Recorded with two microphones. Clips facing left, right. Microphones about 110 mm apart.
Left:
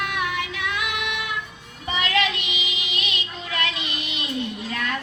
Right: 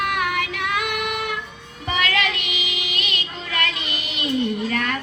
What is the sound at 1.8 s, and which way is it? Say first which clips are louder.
Music: right 1 dB; 55° right (ahead or behind).